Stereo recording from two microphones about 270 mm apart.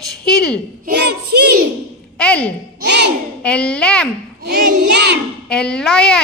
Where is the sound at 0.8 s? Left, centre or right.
Right.